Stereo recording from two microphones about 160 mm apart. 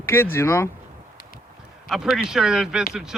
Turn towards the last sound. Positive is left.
turn(degrees=-5)  # may be behind; listen again after turning